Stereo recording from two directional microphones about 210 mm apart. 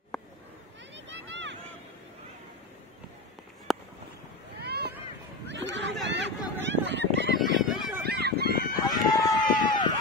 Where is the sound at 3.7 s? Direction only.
Centre (ahead or behind).